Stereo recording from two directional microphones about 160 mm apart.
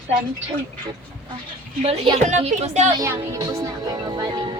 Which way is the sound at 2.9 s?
20° right (ahead or behind).